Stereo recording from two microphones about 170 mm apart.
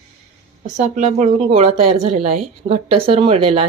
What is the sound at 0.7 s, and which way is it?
Speech, 45° right (ahead or behind).